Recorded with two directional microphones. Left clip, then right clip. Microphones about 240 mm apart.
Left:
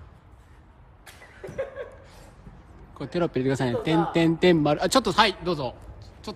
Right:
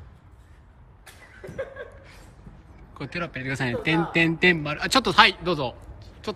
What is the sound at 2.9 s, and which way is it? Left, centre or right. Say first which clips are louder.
A man's voice: left 5 dB; centre.